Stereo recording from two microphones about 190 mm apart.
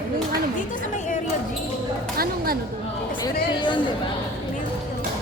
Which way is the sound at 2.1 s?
50° right (ahead or behind).